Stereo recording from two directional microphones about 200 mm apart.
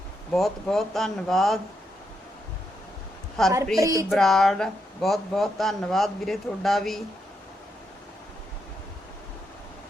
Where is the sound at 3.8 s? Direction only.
15° right (ahead or behind).